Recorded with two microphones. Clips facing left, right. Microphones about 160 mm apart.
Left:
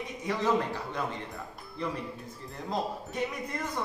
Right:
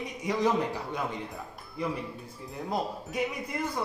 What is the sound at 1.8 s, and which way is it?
A man's voice, 10° right (ahead or behind).